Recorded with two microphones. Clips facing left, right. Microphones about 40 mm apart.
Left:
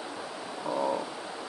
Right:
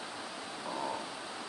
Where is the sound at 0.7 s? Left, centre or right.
Left.